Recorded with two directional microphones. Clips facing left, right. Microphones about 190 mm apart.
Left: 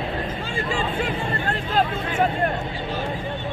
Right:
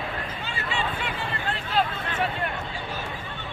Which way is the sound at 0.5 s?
45° left (ahead or behind).